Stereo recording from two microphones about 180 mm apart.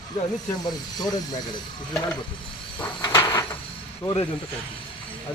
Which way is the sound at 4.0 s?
25° left (ahead or behind).